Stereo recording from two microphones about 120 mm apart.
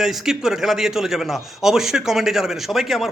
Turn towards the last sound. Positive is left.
turn(degrees=0)  # may be behind; listen again after turning